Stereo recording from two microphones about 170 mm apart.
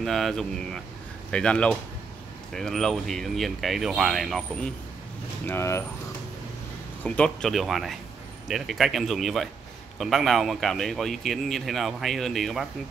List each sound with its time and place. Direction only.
0.0 s a man's voice: centre (ahead or behind)
5.5 s speech: 15° left (ahead or behind)
7.0 s a man's voice: 5° left (ahead or behind)